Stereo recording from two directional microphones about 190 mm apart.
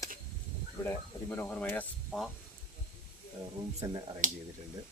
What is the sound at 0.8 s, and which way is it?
Speech, 10° left (ahead or behind).